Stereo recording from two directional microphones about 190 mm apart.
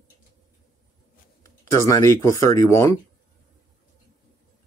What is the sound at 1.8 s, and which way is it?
Speech, 15° left (ahead or behind).